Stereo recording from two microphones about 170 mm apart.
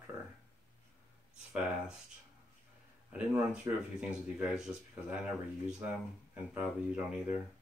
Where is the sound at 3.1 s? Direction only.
5° right (ahead or behind).